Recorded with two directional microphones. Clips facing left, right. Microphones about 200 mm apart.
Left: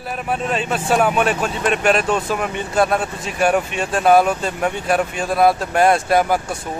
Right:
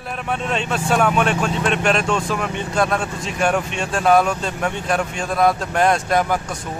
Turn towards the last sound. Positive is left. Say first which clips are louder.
# left 3 dB
turn(degrees=10)  # may be behind; listen again after turning